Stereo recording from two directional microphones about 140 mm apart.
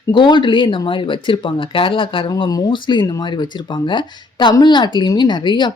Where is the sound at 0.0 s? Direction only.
30° left (ahead or behind).